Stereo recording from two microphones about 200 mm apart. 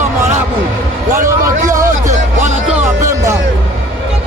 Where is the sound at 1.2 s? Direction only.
15° right (ahead or behind).